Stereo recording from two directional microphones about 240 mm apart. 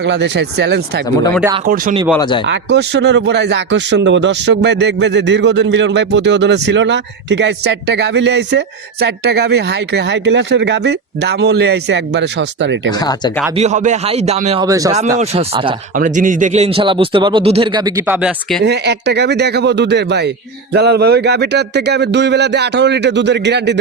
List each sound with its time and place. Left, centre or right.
0.0 s speech: right
1.6 s speech: right
2.5 s speech: right
13.0 s speech: centre
13.6 s speech: right
14.6 s speech: centre
15.2 s speech: right; by 18.6 s centre
18.6 s speech: right